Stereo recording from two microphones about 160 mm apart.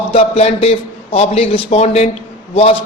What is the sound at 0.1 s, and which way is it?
A man's voice, 40° left (ahead or behind).